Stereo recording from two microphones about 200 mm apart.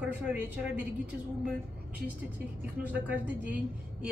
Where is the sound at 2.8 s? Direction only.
10° right (ahead or behind).